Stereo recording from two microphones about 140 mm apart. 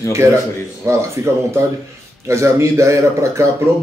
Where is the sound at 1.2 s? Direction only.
20° right (ahead or behind).